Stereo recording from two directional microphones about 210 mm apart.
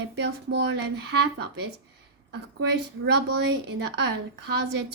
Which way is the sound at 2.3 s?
55° right (ahead or behind).